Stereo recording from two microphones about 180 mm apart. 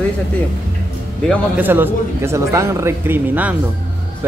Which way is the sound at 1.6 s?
10° right (ahead or behind).